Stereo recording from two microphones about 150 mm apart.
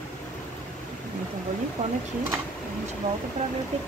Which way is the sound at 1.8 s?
55° right (ahead or behind).